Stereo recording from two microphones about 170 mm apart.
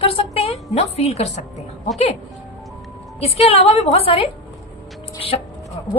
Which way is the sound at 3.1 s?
35° left (ahead or behind).